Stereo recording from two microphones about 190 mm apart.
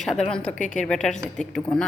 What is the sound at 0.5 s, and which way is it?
Speech, 40° left (ahead or behind).